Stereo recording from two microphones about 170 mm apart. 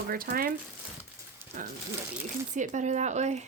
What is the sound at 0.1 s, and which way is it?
Speech, 60° right (ahead or behind).